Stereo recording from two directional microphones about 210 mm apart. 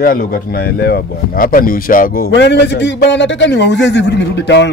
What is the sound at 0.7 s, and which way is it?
Speech, 50° left (ahead or behind).